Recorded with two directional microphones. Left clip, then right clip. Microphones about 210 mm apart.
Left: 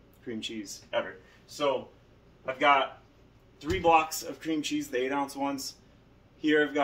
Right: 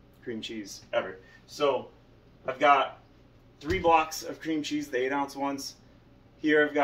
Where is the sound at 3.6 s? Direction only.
10° left (ahead or behind).